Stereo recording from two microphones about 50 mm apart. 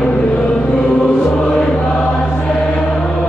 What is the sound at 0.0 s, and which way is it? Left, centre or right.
Choir, centre.